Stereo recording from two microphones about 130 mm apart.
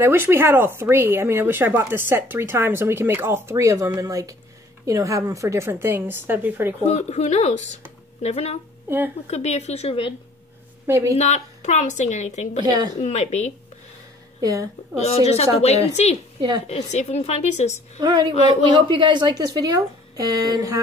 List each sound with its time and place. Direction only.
0.0 s speech: 15° right (ahead or behind)
6.8 s a woman's voice: 55° left (ahead or behind)
8.8 s speech: 15° right (ahead or behind)
9.3 s a woman's voice: 55° left (ahead or behind)
10.9 s speech: 20° right (ahead or behind)
11.1 s a woman's voice: 60° left (ahead or behind)
12.6 s speech: 30° right (ahead or behind)
12.9 s a woman's voice: 60° left (ahead or behind)
14.4 s speech: 25° right (ahead or behind)
15.0 s a woman's voice: 55° left (ahead or behind)
16.3 s a woman's voice: 35° right (ahead or behind)
16.6 s a woman's voice: 60° left (ahead or behind)
17.9 s speech: 30° right (ahead or behind)